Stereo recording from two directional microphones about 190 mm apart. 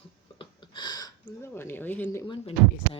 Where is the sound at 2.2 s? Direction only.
25° left (ahead or behind).